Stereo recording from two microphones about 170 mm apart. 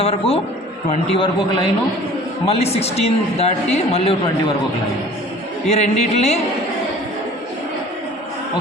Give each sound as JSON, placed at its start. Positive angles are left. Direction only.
{"t": 0.0, "sound": "a man's voice", "side_deg": 35}
{"t": 5.6, "sound": "a man's voice", "side_deg": 40}